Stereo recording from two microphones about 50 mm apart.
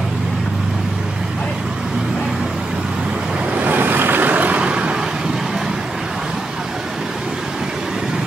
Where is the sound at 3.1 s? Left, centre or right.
Right.